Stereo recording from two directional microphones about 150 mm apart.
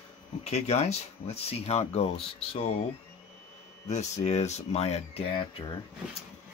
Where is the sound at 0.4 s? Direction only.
45° left (ahead or behind).